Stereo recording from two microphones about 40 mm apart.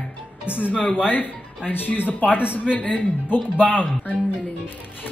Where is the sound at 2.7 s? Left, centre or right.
Left.